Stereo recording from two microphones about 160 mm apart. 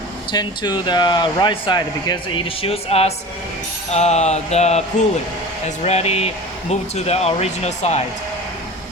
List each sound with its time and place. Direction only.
0.3 s speech: 25° left (ahead or behind)
3.9 s music: 45° left (ahead or behind)
5.6 s speech: 40° left (ahead or behind)